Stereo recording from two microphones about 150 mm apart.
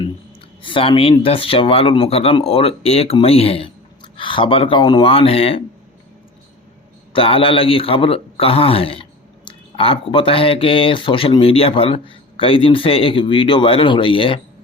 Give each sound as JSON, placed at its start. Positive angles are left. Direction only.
{"t": 0.6, "sound": "speech", "side_deg": 35}
{"t": 7.1, "sound": "speech", "side_deg": 35}